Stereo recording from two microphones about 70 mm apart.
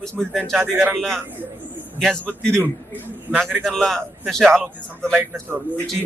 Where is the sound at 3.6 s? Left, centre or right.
Centre.